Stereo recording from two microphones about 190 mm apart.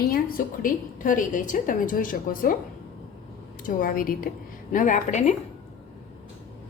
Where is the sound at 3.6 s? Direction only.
45° left (ahead or behind).